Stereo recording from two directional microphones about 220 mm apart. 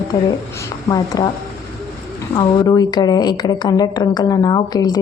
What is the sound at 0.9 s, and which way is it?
Speech, 15° left (ahead or behind).